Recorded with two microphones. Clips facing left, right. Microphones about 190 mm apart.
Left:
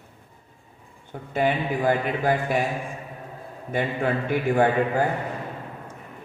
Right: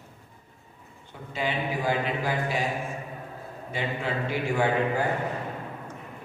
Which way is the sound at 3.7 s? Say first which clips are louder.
Left 6 dB; 50° left (ahead or behind).